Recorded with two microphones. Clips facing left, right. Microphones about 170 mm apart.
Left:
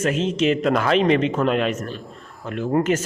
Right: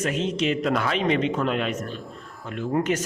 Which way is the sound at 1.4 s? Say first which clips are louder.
Left 5 dB; 70° left (ahead or behind).